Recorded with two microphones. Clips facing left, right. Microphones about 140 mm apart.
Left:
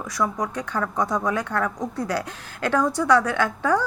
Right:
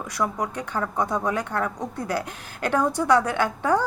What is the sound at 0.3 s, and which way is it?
Speech, 10° right (ahead or behind).